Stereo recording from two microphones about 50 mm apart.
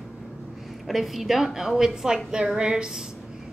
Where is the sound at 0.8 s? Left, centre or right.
Centre.